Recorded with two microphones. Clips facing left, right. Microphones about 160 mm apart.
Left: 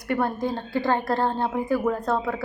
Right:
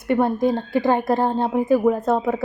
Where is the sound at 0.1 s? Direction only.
20° right (ahead or behind).